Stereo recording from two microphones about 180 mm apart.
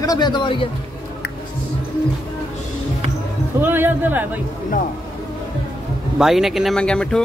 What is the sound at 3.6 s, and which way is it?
Speech, 10° right (ahead or behind).